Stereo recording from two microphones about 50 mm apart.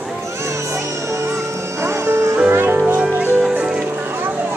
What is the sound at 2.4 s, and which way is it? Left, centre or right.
Music, right.